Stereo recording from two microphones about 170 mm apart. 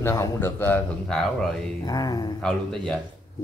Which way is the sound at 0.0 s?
15° left (ahead or behind).